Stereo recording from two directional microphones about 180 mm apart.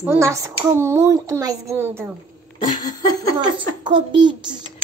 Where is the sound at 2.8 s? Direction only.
20° left (ahead or behind).